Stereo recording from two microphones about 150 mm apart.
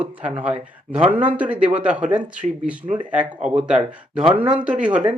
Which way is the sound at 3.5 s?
5° right (ahead or behind).